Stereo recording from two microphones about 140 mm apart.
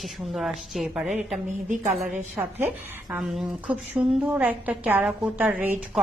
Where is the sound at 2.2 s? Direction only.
15° right (ahead or behind).